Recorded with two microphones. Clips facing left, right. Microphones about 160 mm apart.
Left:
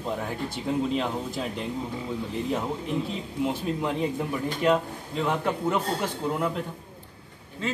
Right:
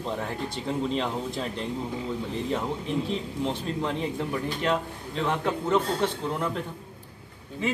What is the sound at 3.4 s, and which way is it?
A man's voice, 5° left (ahead or behind).